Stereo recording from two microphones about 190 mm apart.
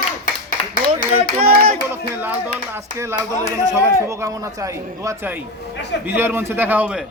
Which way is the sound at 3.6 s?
15° right (ahead or behind).